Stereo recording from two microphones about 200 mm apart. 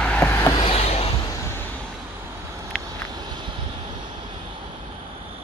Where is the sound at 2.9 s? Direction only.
20° right (ahead or behind).